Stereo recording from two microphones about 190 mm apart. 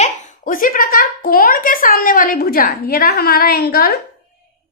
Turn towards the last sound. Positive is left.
turn(degrees=55)  # may be behind; listen again after turning